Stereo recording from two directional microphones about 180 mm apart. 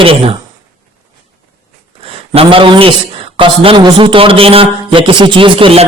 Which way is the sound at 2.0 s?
30° right (ahead or behind).